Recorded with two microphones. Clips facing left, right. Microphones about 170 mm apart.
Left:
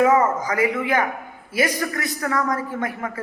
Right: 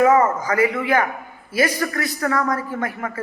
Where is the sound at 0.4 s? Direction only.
20° left (ahead or behind).